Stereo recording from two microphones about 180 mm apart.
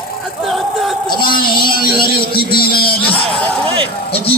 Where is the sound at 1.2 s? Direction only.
55° left (ahead or behind).